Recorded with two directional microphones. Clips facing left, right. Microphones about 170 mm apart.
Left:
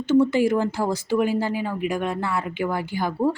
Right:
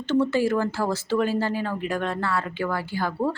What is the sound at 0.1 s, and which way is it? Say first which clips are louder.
Speech: left 3 dB; 15° left (ahead or behind).